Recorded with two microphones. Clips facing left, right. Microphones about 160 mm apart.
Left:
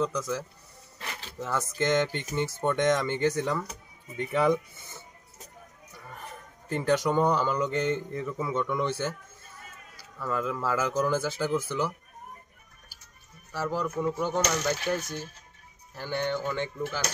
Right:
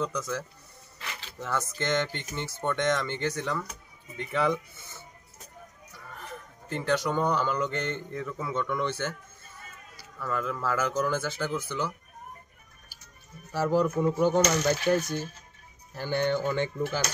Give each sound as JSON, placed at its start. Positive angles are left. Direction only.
{"t": 0.0, "sound": "speech", "side_deg": 0}
{"t": 6.9, "sound": "speech", "side_deg": 15}
{"t": 10.1, "sound": "speech", "side_deg": 5}
{"t": 13.7, "sound": "speech", "side_deg": -20}
{"t": 14.7, "sound": "speech", "side_deg": 0}